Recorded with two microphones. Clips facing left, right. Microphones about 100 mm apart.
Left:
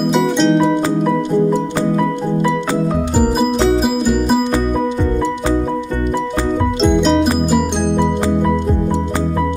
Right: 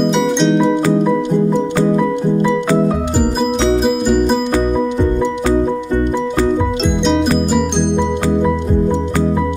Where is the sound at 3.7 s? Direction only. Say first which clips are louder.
Right 2 dB; centre (ahead or behind).